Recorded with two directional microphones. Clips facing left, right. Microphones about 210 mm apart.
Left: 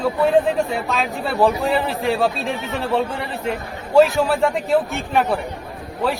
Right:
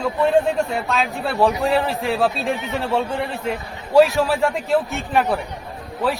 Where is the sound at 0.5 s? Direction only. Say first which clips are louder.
Even; centre (ahead or behind).